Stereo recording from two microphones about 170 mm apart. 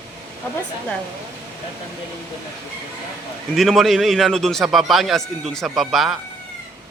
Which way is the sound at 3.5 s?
Centre (ahead or behind).